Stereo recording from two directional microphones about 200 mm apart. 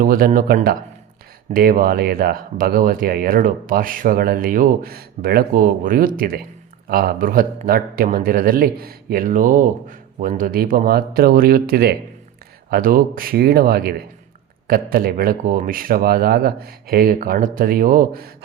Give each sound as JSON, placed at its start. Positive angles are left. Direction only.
{"t": 0.0, "sound": "speech", "side_deg": -45}